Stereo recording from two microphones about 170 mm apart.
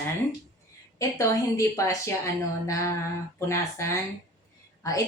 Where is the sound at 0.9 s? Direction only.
20° left (ahead or behind).